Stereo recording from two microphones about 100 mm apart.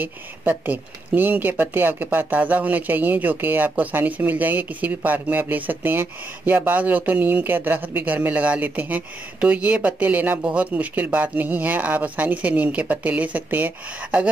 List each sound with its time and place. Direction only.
0.0 s speech: 15° right (ahead or behind)